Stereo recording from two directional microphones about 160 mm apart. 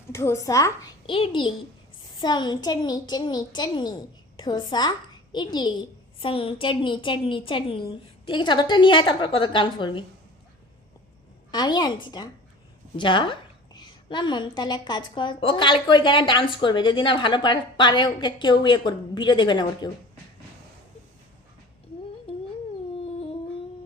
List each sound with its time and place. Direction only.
0.1 s a woman's voice: 15° left (ahead or behind)
1.1 s a woman's voice: 30° left (ahead or behind)
11.5 s a woman's voice: 25° left (ahead or behind)